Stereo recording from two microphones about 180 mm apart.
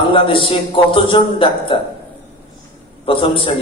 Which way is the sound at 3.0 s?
30° left (ahead or behind).